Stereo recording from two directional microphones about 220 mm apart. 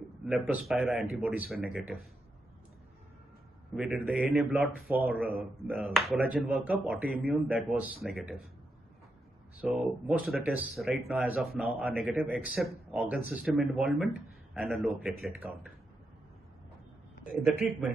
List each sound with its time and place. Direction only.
0.2 s speech: centre (ahead or behind)
3.7 s speech: 5° right (ahead or behind)
9.7 s speech: 5° right (ahead or behind)